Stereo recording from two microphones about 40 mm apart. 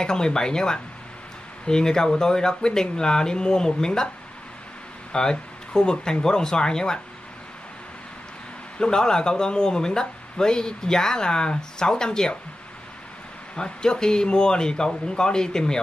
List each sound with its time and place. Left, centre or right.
0.0 s speech: centre
5.1 s speech: centre
8.7 s speech: centre
13.6 s speech: centre